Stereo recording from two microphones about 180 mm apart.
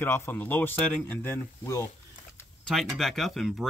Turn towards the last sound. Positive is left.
turn(degrees=0)  # may be behind; listen again after turning